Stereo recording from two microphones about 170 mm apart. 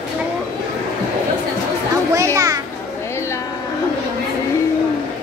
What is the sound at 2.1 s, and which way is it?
Music, 20° right (ahead or behind).